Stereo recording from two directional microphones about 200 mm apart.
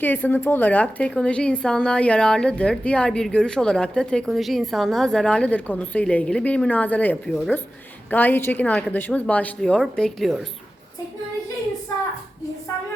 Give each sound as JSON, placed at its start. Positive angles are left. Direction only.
{"t": 0.0, "sound": "a woman's voice", "side_deg": 10}